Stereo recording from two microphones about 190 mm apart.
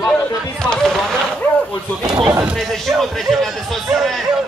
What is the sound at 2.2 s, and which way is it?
Speech, 20° right (ahead or behind).